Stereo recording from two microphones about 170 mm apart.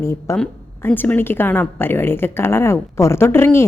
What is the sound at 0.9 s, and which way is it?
A woman's voice, 10° left (ahead or behind).